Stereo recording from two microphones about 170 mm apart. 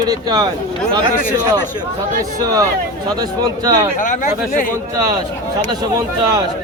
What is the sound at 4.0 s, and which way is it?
Speech, 50° left (ahead or behind).